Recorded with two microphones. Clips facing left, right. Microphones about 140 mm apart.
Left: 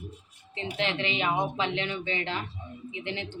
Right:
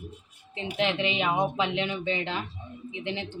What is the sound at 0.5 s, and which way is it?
A woman's voice, 15° right (ahead or behind).